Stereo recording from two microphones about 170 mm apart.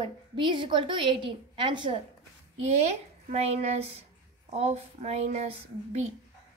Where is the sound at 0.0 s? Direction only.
30° right (ahead or behind).